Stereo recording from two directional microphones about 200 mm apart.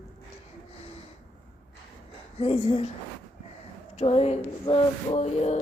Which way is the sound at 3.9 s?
30° left (ahead or behind).